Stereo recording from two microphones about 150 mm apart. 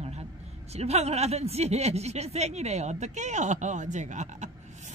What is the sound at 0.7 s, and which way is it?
Speech, 45° right (ahead or behind).